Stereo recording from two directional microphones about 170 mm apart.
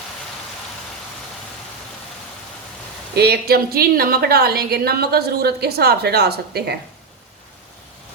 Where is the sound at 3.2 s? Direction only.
70° right (ahead or behind).